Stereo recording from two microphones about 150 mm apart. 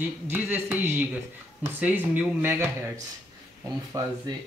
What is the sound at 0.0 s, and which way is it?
Speech, 15° right (ahead or behind).